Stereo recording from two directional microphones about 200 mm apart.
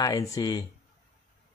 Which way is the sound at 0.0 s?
15° left (ahead or behind).